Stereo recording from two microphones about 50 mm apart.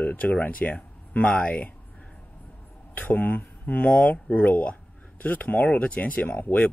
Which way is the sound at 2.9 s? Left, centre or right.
Left.